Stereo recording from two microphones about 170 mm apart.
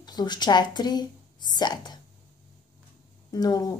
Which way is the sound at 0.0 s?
25° left (ahead or behind).